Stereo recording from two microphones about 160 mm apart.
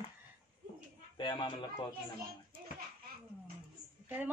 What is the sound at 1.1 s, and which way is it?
Speech, 30° left (ahead or behind).